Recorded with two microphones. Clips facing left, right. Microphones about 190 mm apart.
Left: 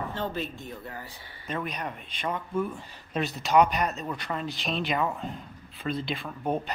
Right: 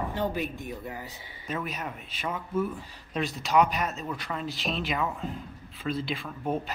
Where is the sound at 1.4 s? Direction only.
5° right (ahead or behind).